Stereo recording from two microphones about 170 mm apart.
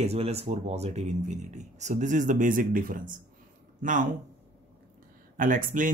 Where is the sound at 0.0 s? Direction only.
40° right (ahead or behind).